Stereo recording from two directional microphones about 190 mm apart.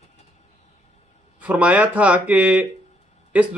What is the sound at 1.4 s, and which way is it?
Speech, 5° right (ahead or behind).